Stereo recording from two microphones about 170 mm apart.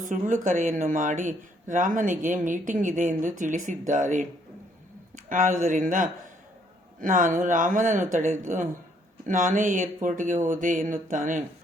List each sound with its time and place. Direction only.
0.0 s speech: 50° right (ahead or behind)